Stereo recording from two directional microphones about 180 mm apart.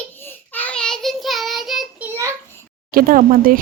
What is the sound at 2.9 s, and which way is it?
Speech, 50° right (ahead or behind).